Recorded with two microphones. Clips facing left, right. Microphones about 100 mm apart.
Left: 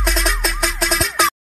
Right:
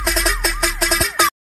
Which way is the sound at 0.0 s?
Centre (ahead or behind).